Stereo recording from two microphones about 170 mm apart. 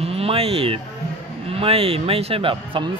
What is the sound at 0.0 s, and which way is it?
Speech, 35° right (ahead or behind).